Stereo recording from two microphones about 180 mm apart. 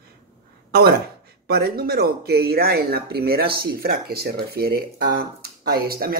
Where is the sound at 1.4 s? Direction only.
60° right (ahead or behind).